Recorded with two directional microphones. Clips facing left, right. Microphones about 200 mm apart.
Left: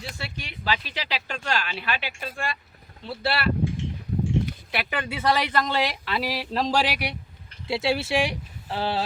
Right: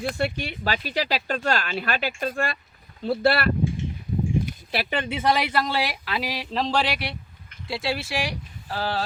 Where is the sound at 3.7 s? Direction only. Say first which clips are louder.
Right 1 dB; 75° left (ahead or behind).